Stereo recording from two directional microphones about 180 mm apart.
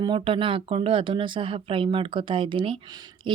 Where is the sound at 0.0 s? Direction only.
30° right (ahead or behind).